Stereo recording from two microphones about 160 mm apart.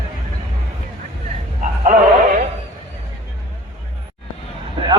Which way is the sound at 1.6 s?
55° right (ahead or behind).